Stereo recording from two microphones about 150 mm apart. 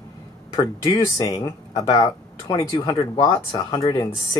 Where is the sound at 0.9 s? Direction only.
25° left (ahead or behind).